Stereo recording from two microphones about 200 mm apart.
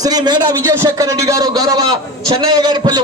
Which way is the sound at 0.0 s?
20° right (ahead or behind).